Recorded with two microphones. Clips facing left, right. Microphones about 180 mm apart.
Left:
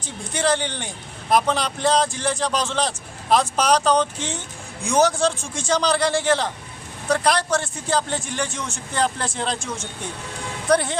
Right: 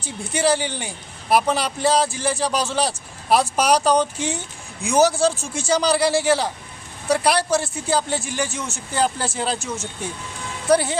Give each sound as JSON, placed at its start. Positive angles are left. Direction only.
{"t": 0.0, "sound": "speech", "side_deg": -10}